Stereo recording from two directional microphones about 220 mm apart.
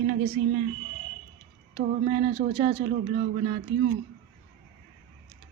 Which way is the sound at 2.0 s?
30° right (ahead or behind).